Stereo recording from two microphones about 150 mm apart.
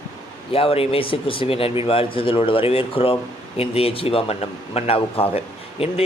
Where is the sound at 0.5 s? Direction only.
40° left (ahead or behind).